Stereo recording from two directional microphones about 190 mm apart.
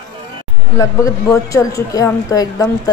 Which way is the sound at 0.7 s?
15° left (ahead or behind).